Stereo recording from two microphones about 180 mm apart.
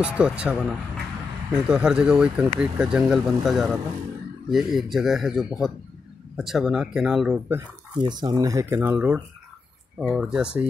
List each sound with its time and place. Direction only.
0.0 s speech: 5° right (ahead or behind)
8.0 s speech: 25° right (ahead or behind); by 10.7 s 5° right (ahead or behind)